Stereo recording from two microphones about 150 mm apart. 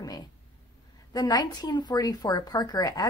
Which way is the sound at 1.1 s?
25° left (ahead or behind).